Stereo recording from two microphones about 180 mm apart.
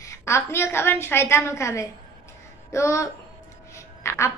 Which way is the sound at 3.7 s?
15° left (ahead or behind).